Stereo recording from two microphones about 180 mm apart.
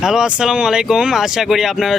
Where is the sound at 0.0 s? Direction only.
5° right (ahead or behind).